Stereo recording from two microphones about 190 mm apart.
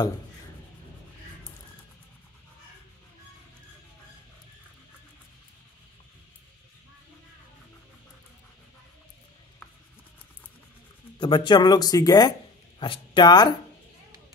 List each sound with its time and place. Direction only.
11.1 s speech: 25° left (ahead or behind)